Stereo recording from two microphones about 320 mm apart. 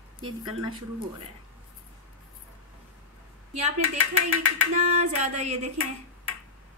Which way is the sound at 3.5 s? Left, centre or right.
Right.